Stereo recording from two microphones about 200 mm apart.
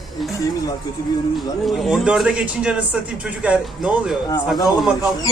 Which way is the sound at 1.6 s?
Centre (ahead or behind).